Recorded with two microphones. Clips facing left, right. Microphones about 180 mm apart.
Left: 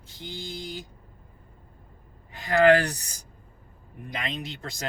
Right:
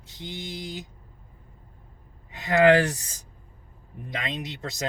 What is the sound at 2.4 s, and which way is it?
Speech, 20° right (ahead or behind).